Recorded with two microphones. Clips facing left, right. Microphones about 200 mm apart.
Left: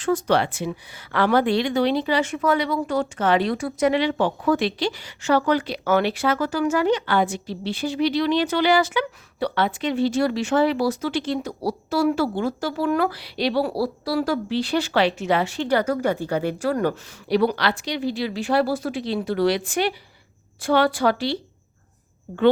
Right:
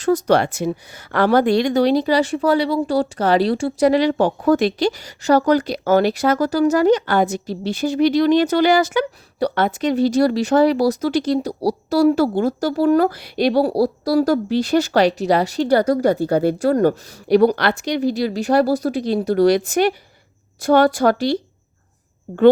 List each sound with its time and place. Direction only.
0.0 s a woman's voice: 40° right (ahead or behind)